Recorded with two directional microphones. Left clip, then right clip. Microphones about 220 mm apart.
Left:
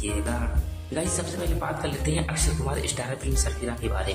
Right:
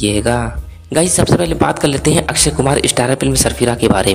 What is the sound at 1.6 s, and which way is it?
Speech, 50° right (ahead or behind).